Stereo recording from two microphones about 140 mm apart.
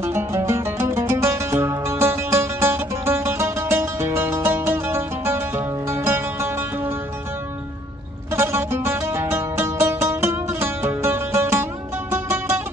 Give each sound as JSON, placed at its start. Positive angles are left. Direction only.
{"t": 0.0, "sound": "music", "side_deg": -20}
{"t": 8.4, "sound": "music", "side_deg": -15}